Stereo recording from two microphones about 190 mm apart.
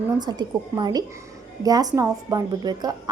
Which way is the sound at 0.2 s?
20° right (ahead or behind).